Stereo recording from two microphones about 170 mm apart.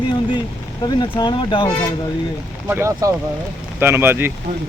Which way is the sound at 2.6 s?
15° right (ahead or behind).